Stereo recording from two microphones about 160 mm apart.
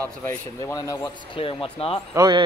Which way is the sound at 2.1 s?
25° right (ahead or behind).